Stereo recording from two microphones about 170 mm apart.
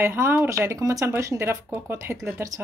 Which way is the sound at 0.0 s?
15° right (ahead or behind).